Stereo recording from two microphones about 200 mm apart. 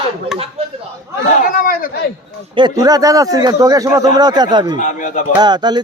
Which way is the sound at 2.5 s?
20° right (ahead or behind).